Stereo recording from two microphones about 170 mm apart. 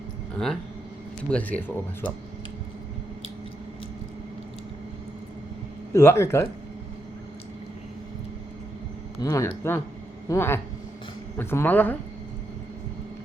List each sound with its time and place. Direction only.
0.3 s speech: 5° left (ahead or behind)
5.9 s speech: 15° left (ahead or behind)
9.2 s speech: 20° left (ahead or behind)